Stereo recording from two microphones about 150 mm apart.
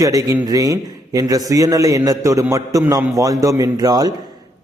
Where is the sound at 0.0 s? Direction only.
20° right (ahead or behind).